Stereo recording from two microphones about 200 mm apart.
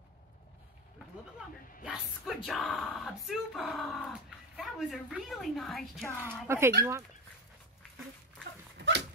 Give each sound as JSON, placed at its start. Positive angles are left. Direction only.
{"t": 1.9, "sound": "speech", "side_deg": 0}
{"t": 6.4, "sound": "speech", "side_deg": -10}
{"t": 8.7, "sound": "a sound", "side_deg": -60}